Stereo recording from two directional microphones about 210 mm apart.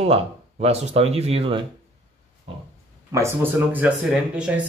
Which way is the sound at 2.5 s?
25° right (ahead or behind).